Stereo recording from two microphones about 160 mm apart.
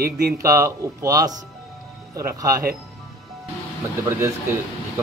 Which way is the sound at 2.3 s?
20° right (ahead or behind).